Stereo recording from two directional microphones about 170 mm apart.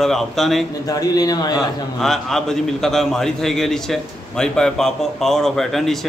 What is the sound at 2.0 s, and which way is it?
A man's voice, centre (ahead or behind).